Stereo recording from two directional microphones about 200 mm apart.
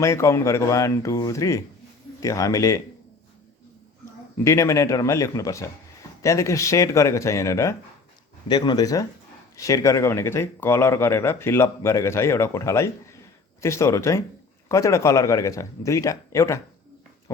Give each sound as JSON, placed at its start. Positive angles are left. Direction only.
{"t": 0.0, "sound": "speech", "side_deg": 15}
{"t": 4.4, "sound": "speech", "side_deg": 15}